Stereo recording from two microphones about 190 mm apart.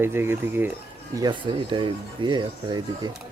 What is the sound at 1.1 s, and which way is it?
Speech, 25° right (ahead or behind).